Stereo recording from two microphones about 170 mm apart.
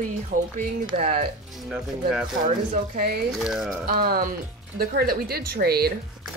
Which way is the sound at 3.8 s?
60° right (ahead or behind).